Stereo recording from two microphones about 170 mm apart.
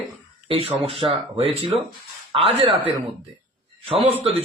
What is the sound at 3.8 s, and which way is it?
Speech, 35° right (ahead or behind).